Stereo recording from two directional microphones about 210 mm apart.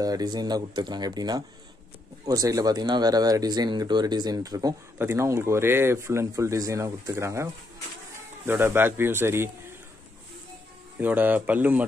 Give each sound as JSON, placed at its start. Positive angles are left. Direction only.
{"t": 0.0, "sound": "speech", "side_deg": -20}
{"t": 8.5, "sound": "speech", "side_deg": -10}
{"t": 11.0, "sound": "speech", "side_deg": -10}